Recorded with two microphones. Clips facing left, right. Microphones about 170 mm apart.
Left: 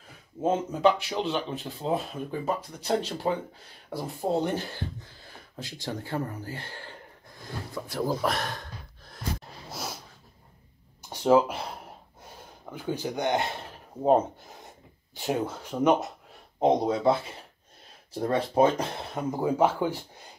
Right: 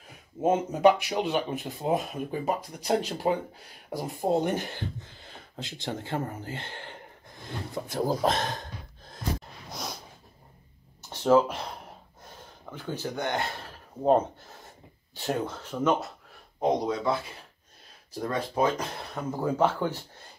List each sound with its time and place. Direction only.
0.4 s speech: 5° right (ahead or behind)
5.2 s a sound: 20° right (ahead or behind)
5.9 s speech: 25° right (ahead or behind)
6.4 s a sound: 20° right (ahead or behind)
9.7 s snort: 5° left (ahead or behind)
11.0 s speech: 10° left (ahead or behind)
12.7 s speech: 10° left (ahead or behind)
15.1 s speech: 10° left (ahead or behind)
16.5 s speech: 30° left (ahead or behind)
18.2 s speech: 30° left (ahead or behind)
19.3 s speech: 10° left (ahead or behind)